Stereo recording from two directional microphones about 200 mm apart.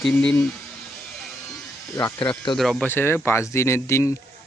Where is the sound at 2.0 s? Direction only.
15° left (ahead or behind).